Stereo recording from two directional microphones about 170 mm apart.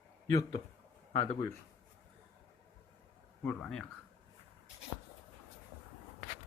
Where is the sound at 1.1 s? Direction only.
35° left (ahead or behind).